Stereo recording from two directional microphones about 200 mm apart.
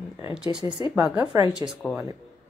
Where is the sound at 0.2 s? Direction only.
5° right (ahead or behind).